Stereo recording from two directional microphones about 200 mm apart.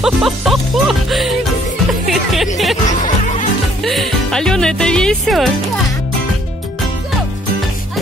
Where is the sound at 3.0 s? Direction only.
40° left (ahead or behind).